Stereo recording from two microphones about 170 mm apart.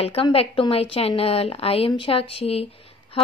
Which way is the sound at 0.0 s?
35° left (ahead or behind).